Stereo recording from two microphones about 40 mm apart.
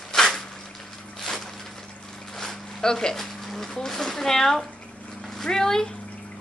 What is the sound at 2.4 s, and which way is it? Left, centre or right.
Speech, centre.